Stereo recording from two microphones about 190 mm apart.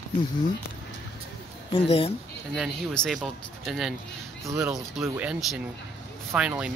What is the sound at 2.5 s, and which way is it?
Speech, centre (ahead or behind).